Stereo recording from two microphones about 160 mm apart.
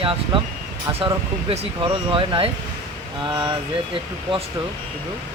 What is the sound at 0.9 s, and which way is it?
Speech, 35° right (ahead or behind).